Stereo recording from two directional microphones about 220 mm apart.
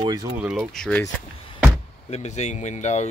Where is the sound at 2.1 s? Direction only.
30° left (ahead or behind).